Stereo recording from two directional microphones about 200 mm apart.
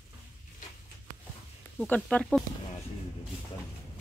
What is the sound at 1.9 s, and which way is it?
Speech, 5° left (ahead or behind).